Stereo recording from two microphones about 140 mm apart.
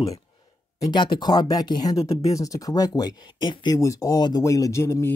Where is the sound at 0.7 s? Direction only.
30° left (ahead or behind).